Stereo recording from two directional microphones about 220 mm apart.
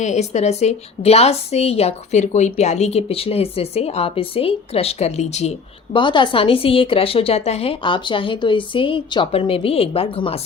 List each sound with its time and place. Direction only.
0.0 s a woman's voice: 30° left (ahead or behind)